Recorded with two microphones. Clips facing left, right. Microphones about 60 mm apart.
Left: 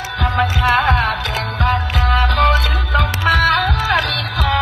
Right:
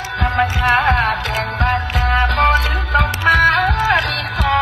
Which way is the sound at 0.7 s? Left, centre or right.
Right.